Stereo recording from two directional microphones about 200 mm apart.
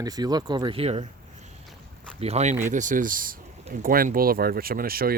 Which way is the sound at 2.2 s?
30° right (ahead or behind).